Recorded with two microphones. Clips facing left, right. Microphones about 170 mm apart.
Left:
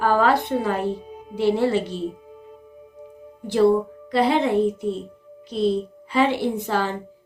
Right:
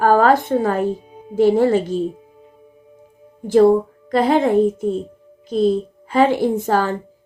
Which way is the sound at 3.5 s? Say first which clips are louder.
Right 5 dB; 45° right (ahead or behind).